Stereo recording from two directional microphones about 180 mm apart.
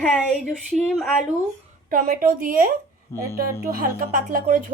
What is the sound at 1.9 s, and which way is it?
Speech, 50° right (ahead or behind).